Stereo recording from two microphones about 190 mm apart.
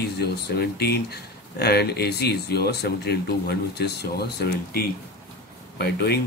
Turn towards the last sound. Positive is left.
turn(degrees=55)  # may be behind; listen again after turning